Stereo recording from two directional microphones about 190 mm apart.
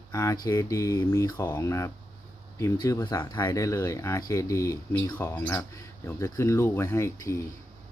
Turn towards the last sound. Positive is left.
turn(degrees=15)  # may be behind; listen again after turning